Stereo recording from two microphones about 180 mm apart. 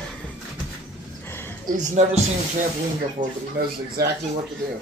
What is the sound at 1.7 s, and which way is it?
Speech, 45° right (ahead or behind).